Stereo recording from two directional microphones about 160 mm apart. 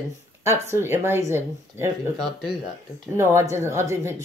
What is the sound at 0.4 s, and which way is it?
Speech, 15° right (ahead or behind).